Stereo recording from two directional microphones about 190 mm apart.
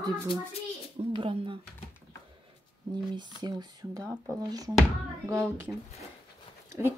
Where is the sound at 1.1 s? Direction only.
25° right (ahead or behind).